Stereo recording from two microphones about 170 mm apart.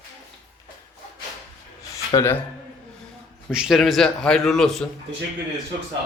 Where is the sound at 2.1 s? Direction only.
20° left (ahead or behind).